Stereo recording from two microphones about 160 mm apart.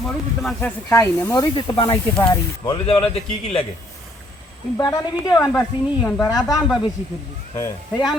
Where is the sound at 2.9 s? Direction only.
40° left (ahead or behind).